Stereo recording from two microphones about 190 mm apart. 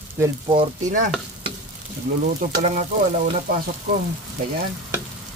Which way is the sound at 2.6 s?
45° right (ahead or behind).